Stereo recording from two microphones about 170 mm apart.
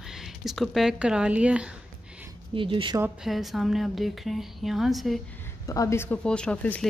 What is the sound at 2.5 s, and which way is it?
Speech, 30° right (ahead or behind).